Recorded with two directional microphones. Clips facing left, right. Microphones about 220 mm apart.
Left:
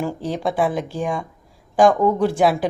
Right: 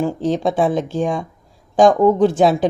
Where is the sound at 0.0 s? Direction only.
20° right (ahead or behind).